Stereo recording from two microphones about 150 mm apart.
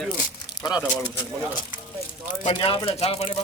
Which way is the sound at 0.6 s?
30° left (ahead or behind).